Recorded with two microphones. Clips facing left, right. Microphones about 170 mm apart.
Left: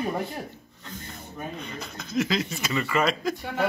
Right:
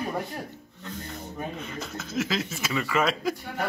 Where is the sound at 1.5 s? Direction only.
5° right (ahead or behind).